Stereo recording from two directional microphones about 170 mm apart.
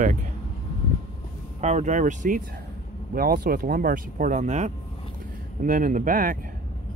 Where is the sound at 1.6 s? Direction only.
45° right (ahead or behind).